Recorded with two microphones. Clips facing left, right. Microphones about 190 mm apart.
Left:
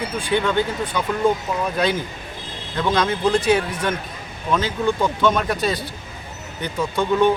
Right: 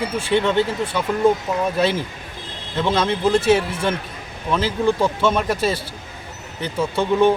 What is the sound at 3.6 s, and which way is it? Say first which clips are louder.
Speech: right 1 dB; 30° right (ahead or behind).